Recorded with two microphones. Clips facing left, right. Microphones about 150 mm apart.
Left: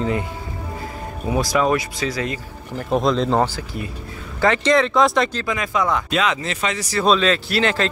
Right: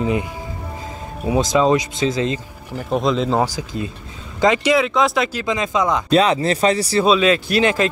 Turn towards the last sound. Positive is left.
turn(degrees=-15)  # may be behind; listen again after turning